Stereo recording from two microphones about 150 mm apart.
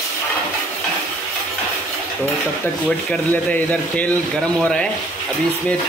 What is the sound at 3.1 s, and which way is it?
Speech, 10° left (ahead or behind).